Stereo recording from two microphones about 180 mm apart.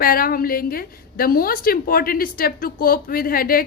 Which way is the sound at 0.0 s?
55° left (ahead or behind).